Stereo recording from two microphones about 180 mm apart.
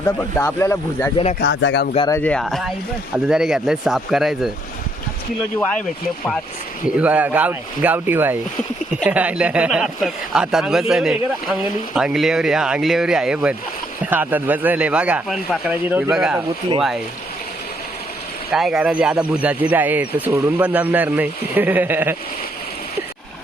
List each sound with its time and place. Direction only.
0.2 s speech: 15° left (ahead or behind)
1.4 s speech: 75° left (ahead or behind)
2.0 s speech: 10° left (ahead or behind)
6.8 s speech: 10° right (ahead or behind)
18.5 s speech: 5° right (ahead or behind)